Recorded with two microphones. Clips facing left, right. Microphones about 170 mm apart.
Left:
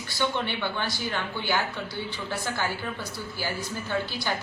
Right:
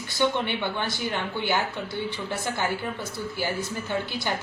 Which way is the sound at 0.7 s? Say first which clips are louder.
Right 2 dB; 20° right (ahead or behind).